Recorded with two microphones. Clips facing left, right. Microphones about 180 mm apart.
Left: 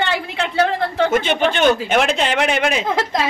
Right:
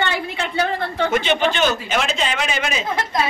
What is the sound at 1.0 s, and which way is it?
Speech, 50° left (ahead or behind).